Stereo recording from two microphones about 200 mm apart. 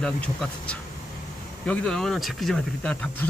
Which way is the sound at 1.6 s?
5° left (ahead or behind).